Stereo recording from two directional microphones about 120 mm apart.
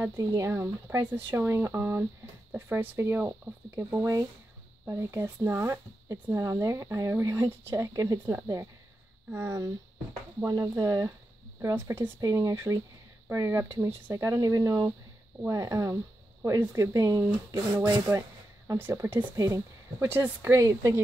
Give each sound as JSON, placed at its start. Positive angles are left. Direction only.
{"t": 0.0, "sound": "speech", "side_deg": -20}